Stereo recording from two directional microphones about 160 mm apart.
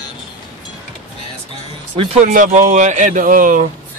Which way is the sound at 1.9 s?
35° right (ahead or behind).